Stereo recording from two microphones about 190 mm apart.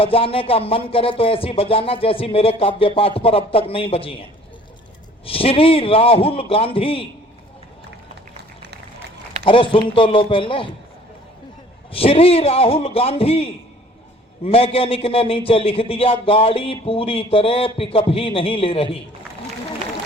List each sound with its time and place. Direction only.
0.0 s a man's voice: 30° left (ahead or behind)
9.4 s a man's voice: 25° left (ahead or behind)
11.9 s a man's voice: 30° left (ahead or behind)